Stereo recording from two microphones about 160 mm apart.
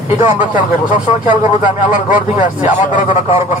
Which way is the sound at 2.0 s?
50° left (ahead or behind).